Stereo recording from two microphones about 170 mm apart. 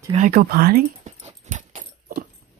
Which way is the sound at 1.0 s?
45° right (ahead or behind).